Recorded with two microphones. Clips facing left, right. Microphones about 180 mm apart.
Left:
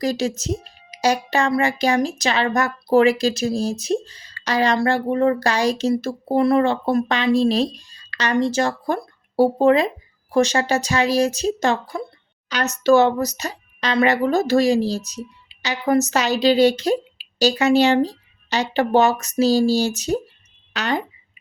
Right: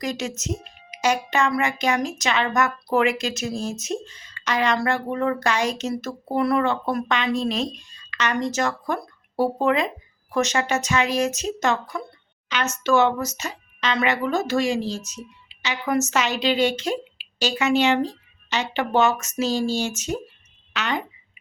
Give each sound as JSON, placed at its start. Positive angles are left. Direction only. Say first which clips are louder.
{"t": 0.0, "sound": "speech", "louder": "left 6 dB", "side_deg": 35}